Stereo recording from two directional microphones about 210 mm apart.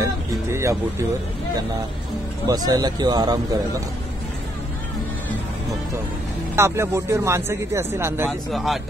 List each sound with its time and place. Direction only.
0.0 s speech: 15° right (ahead or behind)
2.4 s speech: 15° right (ahead or behind)
6.5 s a man's voice: 10° right (ahead or behind)
8.3 s a man's voice: centre (ahead or behind)